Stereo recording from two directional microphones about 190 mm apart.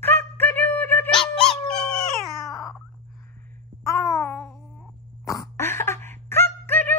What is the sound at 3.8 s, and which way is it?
Babbling, 15° left (ahead or behind).